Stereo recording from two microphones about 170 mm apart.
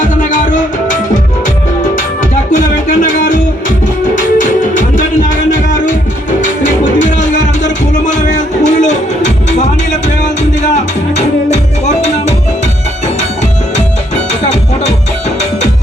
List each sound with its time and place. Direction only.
0.0 s music: 50° left (ahead or behind)
2.3 s music: 45° left (ahead or behind)
11.5 s music: 45° left (ahead or behind)